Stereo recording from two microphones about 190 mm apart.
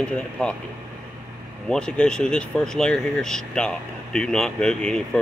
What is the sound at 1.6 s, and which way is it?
Speech, 5° left (ahead or behind).